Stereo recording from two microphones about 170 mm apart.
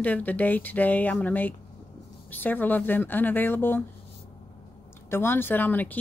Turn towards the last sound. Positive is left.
turn(degrees=10)  # may be behind; listen again after turning